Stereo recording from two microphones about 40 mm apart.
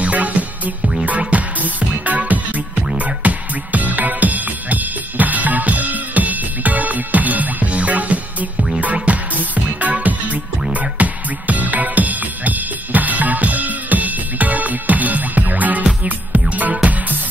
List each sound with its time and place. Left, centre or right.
0.0 s music: right
8.5 s music: centre
8.9 s music: right